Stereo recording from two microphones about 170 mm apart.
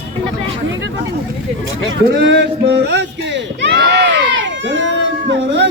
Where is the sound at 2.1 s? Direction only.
90° right.